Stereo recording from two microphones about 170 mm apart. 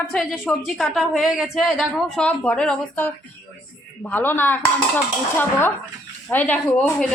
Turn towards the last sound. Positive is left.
turn(degrees=5)  # may be behind; listen again after turning